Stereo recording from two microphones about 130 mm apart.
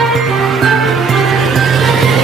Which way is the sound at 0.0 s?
Centre (ahead or behind).